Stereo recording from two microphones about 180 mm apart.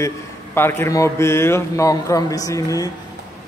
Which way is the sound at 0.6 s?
15° left (ahead or behind).